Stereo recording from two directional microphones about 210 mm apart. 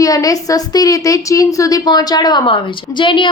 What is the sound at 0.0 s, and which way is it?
A woman's voice, 15° left (ahead or behind).